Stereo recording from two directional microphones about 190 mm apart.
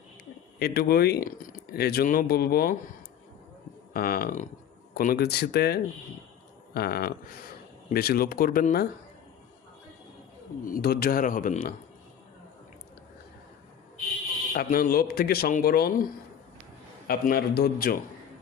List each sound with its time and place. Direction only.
0.2 s speech: 60° left (ahead or behind)
3.9 s speech: 50° left (ahead or behind)
10.6 s speech: 50° left (ahead or behind)
14.5 s speech: 50° left (ahead or behind)
17.1 s speech: 55° left (ahead or behind)